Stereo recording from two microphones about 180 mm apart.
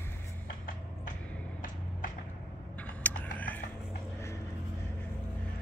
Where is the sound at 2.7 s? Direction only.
10° left (ahead or behind).